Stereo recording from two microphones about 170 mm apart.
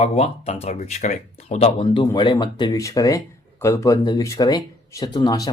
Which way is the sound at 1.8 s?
25° left (ahead or behind).